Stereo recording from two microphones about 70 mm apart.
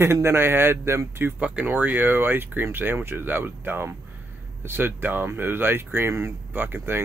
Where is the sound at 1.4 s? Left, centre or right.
Centre.